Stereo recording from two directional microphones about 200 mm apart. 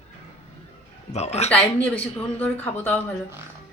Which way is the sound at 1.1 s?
35° left (ahead or behind).